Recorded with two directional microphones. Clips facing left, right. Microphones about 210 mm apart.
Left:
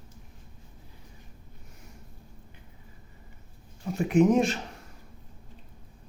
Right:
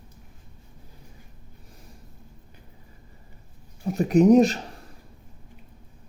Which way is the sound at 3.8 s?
40° right (ahead or behind).